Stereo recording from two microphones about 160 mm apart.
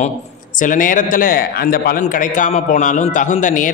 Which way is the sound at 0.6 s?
55° left (ahead or behind).